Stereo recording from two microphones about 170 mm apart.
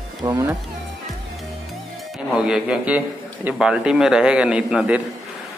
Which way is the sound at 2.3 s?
5° right (ahead or behind).